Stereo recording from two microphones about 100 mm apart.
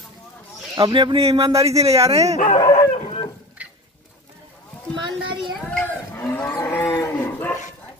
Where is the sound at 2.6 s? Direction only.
45° left (ahead or behind).